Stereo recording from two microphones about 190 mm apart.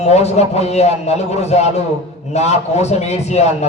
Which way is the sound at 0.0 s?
35° left (ahead or behind).